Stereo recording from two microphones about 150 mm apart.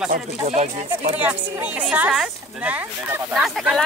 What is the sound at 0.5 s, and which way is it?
Speech, 45° right (ahead or behind).